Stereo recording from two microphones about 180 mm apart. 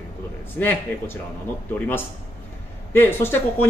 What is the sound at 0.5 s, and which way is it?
Speech, 10° left (ahead or behind).